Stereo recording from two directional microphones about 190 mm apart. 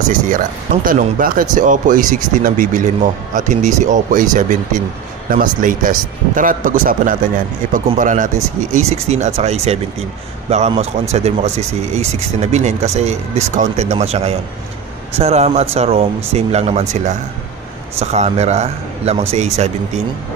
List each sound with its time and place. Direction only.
0.8 s speech: 45° right (ahead or behind)